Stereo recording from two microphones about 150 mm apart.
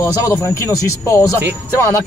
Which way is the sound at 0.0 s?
20° left (ahead or behind).